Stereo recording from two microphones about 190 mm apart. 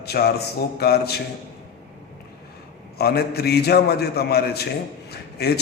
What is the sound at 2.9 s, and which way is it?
A man's voice, 55° left (ahead or behind).